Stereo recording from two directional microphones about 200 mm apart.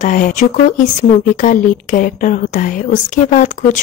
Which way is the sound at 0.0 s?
40° left (ahead or behind).